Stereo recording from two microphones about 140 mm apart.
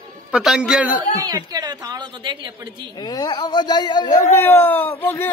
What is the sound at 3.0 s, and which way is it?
Speech, 30° left (ahead or behind).